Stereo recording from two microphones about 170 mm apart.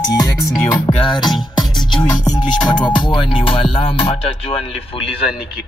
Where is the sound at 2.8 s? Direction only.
25° left (ahead or behind).